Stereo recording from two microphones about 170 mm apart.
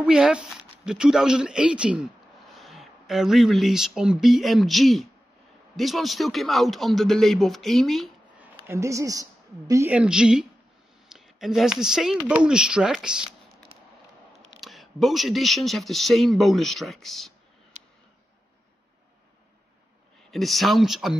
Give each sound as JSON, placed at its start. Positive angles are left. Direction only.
{"t": 0.0, "sound": "speech", "side_deg": -5}
{"t": 8.6, "sound": "a woman's voice", "side_deg": -15}
{"t": 14.6, "sound": "speech", "side_deg": 0}
{"t": 20.2, "sound": "speech", "side_deg": 0}